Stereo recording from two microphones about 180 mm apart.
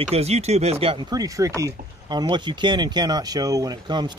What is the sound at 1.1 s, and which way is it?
Speech, 20° right (ahead or behind).